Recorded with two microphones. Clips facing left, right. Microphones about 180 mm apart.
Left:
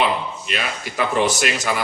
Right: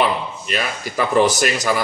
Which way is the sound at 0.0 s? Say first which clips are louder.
Right 1 dB; 40° right (ahead or behind).